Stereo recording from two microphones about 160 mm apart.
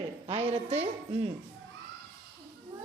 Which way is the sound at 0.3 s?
35° right (ahead or behind).